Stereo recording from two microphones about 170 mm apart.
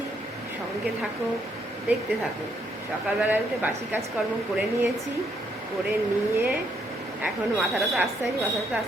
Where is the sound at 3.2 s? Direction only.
10° right (ahead or behind).